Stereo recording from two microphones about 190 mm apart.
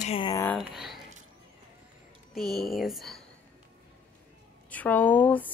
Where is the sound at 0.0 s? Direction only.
30° left (ahead or behind).